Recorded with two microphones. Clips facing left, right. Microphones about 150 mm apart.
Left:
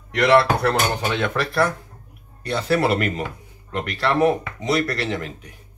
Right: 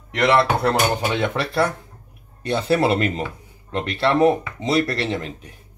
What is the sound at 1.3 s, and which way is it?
Speech, 25° right (ahead or behind).